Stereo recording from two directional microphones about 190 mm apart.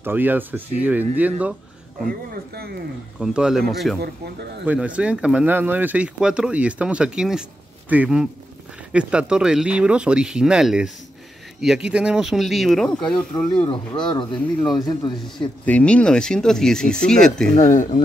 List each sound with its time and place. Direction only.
0.0 s speech: 10° right (ahead or behind)
2.0 s speech: 55° right (ahead or behind)
3.2 s speech: 5° right (ahead or behind)
13.7 s speech: 25° left (ahead or behind)
15.6 s speech: 5° left (ahead or behind)
17.6 s speech: 40° left (ahead or behind)